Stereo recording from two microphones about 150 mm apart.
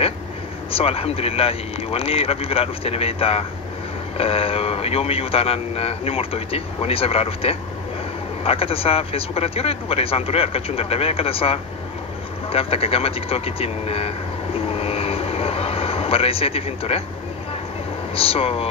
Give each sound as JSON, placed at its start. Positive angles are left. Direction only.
{"t": 0.7, "sound": "a man's voice", "side_deg": 40}
{"t": 12.4, "sound": "vehicle", "side_deg": 40}
{"t": 18.1, "sound": "a man's voice", "side_deg": 40}